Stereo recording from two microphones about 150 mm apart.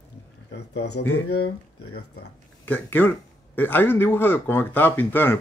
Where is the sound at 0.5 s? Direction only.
90° left.